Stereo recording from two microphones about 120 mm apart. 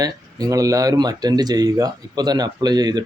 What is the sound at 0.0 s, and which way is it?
Speech, 30° right (ahead or behind).